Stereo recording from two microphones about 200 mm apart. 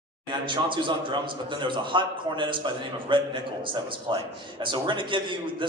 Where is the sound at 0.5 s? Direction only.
25° right (ahead or behind).